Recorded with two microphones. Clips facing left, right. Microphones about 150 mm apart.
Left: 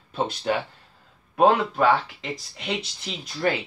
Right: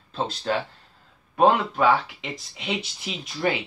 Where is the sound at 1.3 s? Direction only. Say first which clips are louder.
Even; centre (ahead or behind).